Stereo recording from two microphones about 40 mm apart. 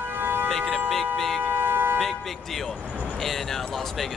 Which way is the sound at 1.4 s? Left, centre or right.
Right.